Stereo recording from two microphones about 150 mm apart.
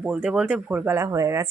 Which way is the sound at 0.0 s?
10° right (ahead or behind).